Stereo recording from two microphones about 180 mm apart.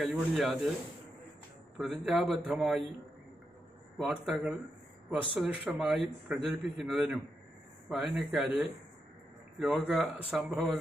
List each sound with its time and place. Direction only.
0.0 s a man's voice: centre (ahead or behind)
1.8 s a man's voice: centre (ahead or behind)
3.9 s a man's voice: centre (ahead or behind)